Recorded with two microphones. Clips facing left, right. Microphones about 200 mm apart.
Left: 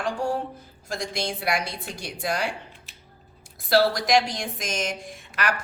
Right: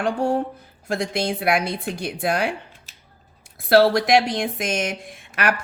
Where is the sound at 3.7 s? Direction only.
60° right (ahead or behind).